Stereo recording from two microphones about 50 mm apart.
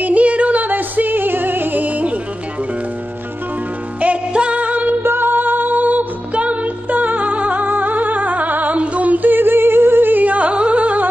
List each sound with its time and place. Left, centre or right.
0.0 s music: right
4.0 s music: right
5.0 s music: right